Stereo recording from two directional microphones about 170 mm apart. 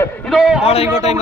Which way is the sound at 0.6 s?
35° left (ahead or behind).